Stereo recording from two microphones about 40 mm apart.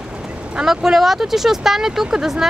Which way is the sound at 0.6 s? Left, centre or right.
Centre.